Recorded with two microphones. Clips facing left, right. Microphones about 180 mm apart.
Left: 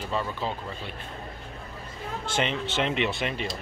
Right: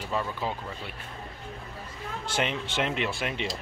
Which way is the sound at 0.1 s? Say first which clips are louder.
Even; 10° right (ahead or behind).